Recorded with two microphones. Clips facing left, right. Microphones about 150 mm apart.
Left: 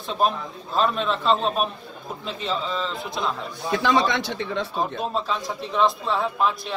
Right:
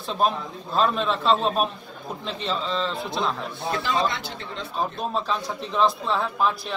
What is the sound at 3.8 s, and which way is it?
Speech, 90° left.